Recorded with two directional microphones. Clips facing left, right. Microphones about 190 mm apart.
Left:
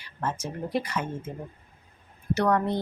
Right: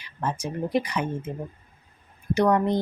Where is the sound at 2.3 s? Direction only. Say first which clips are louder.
Right 3 dB; 15° right (ahead or behind).